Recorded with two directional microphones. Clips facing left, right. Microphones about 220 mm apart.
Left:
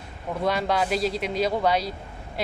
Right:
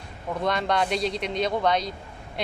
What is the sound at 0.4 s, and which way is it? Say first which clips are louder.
Speech: left 1 dB; 5° left (ahead or behind).